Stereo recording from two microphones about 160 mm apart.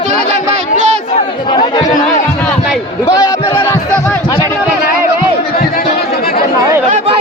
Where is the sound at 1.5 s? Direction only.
25° left (ahead or behind).